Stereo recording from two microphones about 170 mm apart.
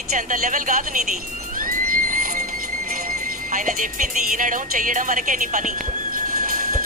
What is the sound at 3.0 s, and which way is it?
Music, 55° right (ahead or behind).